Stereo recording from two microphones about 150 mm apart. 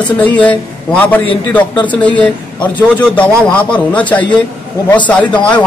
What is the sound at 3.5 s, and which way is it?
A man's voice, 10° left (ahead or behind).